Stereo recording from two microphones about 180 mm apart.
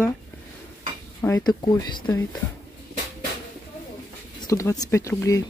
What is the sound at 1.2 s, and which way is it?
Speech, 15° left (ahead or behind).